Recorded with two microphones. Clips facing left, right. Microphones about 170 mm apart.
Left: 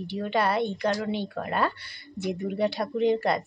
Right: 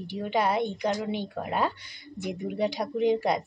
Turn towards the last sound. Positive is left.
turn(degrees=-15)  # may be behind; listen again after turning